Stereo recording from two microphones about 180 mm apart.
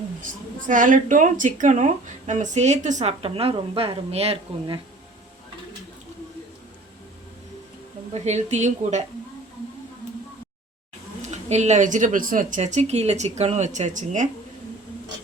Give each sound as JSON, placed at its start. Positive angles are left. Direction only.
{"t": 0.7, "sound": "speech", "side_deg": -45}
{"t": 8.1, "sound": "speech", "side_deg": -40}
{"t": 11.2, "sound": "speech", "side_deg": -40}
{"t": 12.5, "sound": "speech", "side_deg": -40}